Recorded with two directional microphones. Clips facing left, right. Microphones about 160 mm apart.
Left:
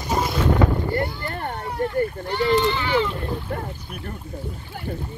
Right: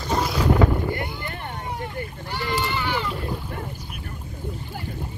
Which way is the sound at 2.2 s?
5° right (ahead or behind).